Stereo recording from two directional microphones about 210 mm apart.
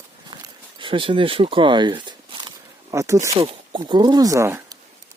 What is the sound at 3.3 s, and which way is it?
Speech, 30° right (ahead or behind).